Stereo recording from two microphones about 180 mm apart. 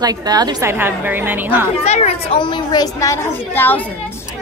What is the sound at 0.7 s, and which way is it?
A woman's voice, 10° right (ahead or behind).